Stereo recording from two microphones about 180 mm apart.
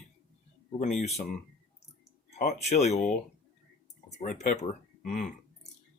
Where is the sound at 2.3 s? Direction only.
60° left (ahead or behind).